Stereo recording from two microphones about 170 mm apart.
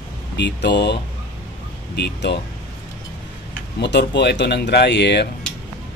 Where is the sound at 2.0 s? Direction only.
75° left (ahead or behind).